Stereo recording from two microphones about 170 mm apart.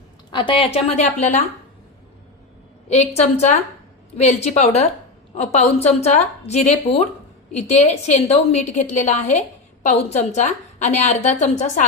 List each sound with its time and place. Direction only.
0.3 s a woman's voice: 30° left (ahead or behind)
2.9 s a woman's voice: 40° left (ahead or behind)